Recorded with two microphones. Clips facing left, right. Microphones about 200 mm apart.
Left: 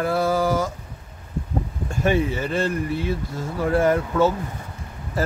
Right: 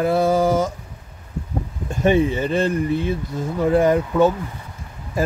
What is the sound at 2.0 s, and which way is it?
Speech, 20° right (ahead or behind).